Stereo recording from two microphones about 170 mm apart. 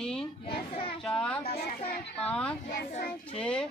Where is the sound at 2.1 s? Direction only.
10° left (ahead or behind).